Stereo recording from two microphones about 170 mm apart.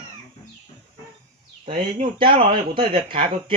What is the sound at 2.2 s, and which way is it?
A man's voice, 30° right (ahead or behind).